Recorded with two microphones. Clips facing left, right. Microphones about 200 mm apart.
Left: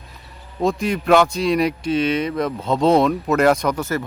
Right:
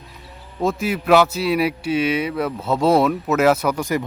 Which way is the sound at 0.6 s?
5° right (ahead or behind).